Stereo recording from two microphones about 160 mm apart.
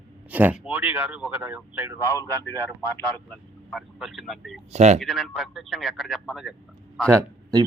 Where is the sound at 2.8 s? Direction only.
10° left (ahead or behind).